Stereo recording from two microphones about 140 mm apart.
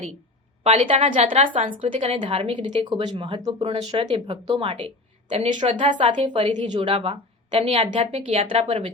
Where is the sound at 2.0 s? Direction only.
45° right (ahead or behind).